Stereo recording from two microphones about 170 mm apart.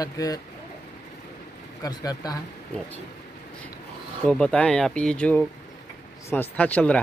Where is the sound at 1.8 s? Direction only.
20° left (ahead or behind).